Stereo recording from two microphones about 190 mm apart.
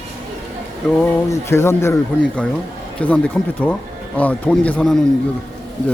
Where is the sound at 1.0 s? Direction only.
15° left (ahead or behind).